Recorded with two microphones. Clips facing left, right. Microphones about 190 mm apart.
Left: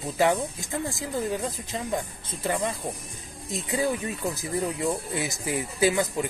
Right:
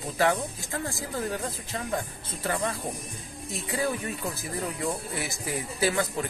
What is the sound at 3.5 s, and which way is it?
Speech, 20° left (ahead or behind).